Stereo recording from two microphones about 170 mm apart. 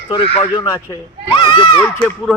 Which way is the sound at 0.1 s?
30° left (ahead or behind).